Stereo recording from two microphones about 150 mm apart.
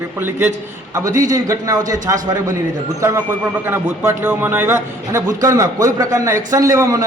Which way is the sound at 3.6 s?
15° right (ahead or behind).